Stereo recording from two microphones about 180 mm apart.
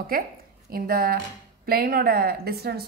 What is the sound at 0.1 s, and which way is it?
A woman's voice, 55° right (ahead or behind).